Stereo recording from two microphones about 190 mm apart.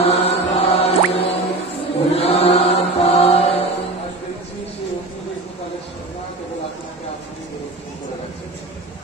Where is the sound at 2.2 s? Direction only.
35° left (ahead or behind).